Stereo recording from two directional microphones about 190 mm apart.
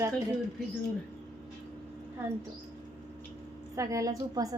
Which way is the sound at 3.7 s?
15° right (ahead or behind).